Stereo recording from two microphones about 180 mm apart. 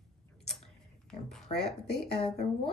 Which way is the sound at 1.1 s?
5° left (ahead or behind).